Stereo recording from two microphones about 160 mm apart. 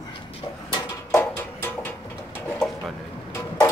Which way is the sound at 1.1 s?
10° left (ahead or behind).